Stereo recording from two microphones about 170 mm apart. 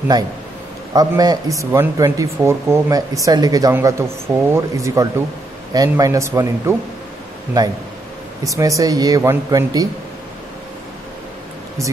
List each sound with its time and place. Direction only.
0.9 s speech: 20° right (ahead or behind)